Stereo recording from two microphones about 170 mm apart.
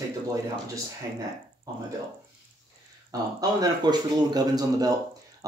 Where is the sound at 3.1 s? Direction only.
25° right (ahead or behind).